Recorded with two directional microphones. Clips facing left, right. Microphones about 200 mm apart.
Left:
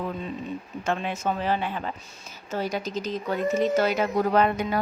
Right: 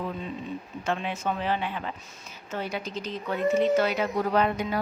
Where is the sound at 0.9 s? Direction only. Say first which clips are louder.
Left 2 dB; 45° left (ahead or behind).